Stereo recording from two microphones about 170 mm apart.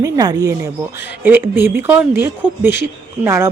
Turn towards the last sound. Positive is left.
turn(degrees=-15)  # may be behind; listen again after turning